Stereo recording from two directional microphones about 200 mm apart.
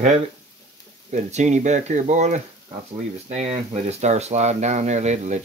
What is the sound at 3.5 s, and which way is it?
Speech, 30° right (ahead or behind).